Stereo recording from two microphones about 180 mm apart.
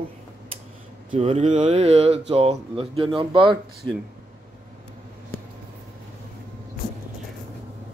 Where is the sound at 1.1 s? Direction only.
35° right (ahead or behind).